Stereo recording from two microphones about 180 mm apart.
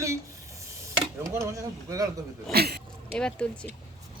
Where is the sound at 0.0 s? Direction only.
15° right (ahead or behind).